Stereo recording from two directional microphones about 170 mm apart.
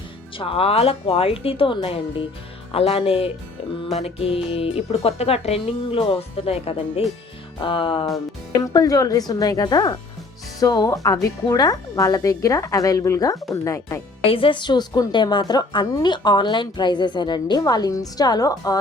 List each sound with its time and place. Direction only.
0.3 s a woman's voice: 35° left (ahead or behind); by 14.0 s 20° left (ahead or behind)
14.3 s a woman's voice: 30° left (ahead or behind)